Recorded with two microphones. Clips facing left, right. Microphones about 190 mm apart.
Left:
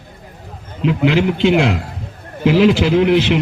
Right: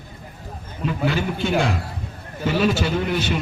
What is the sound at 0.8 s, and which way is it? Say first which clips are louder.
A man's voice: left 8 dB; 85° left.